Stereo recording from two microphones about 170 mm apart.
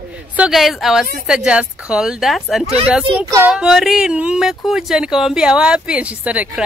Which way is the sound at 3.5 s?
5° right (ahead or behind).